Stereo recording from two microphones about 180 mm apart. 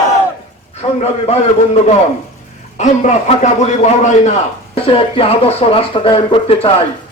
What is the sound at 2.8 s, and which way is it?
Speech, 40° left (ahead or behind).